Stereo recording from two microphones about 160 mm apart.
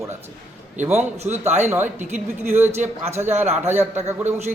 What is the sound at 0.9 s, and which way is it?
A man's voice, 45° right (ahead or behind).